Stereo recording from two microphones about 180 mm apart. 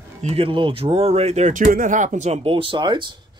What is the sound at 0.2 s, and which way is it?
Speech, 35° right (ahead or behind).